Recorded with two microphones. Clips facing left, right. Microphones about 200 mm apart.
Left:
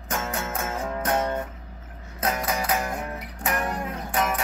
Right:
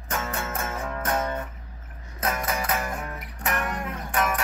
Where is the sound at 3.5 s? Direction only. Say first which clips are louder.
Left 2 dB; 30° left (ahead or behind).